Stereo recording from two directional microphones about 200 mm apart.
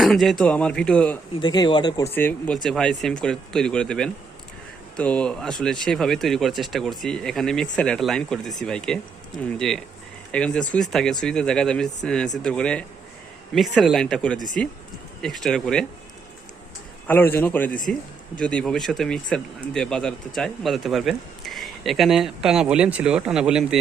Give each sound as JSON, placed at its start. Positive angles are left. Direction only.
{"t": 0.0, "sound": "speech", "side_deg": 0}
{"t": 1.4, "sound": "speech", "side_deg": 20}
{"t": 2.1, "sound": "speech", "side_deg": 5}
{"t": 17.1, "sound": "a man's voice", "side_deg": 10}